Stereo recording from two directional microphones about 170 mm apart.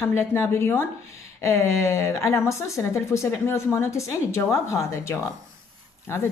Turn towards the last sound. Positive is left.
turn(degrees=15)  # may be behind; listen again after turning